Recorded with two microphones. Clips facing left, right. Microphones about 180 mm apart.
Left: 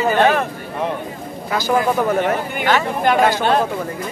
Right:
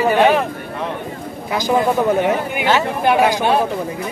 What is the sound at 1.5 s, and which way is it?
Speech, 15° right (ahead or behind).